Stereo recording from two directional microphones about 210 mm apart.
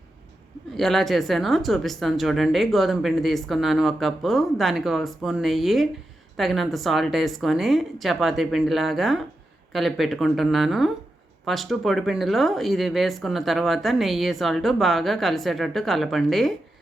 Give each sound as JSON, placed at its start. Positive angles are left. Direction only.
{"t": 0.8, "sound": "speech", "side_deg": 0}